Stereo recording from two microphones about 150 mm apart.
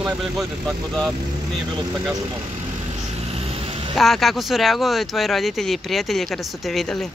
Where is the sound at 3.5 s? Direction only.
40° right (ahead or behind).